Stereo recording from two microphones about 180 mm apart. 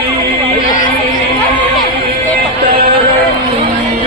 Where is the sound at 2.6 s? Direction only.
55° right (ahead or behind).